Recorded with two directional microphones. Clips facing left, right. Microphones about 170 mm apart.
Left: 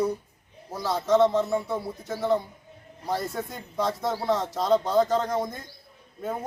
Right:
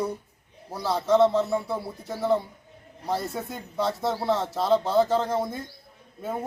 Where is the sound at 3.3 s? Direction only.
5° right (ahead or behind).